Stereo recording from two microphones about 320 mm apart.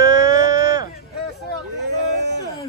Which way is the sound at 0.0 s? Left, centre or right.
Centre.